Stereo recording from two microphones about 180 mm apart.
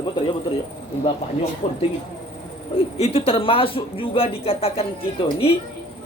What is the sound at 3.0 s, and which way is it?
A man's voice, 30° left (ahead or behind).